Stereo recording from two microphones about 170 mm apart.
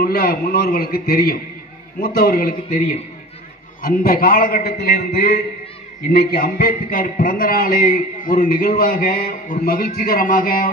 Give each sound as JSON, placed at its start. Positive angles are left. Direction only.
{"t": 0.0, "sound": "a man's voice", "side_deg": 60}